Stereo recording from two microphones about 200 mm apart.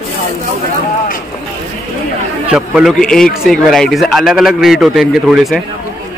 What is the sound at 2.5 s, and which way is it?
A man's voice, 5° right (ahead or behind).